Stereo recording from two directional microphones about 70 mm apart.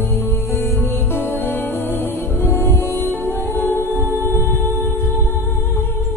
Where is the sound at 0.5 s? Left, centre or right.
Left.